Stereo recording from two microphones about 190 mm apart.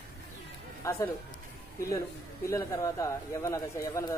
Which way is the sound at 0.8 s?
15° left (ahead or behind).